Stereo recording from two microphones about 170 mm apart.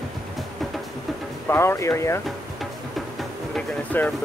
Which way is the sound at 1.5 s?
15° left (ahead or behind).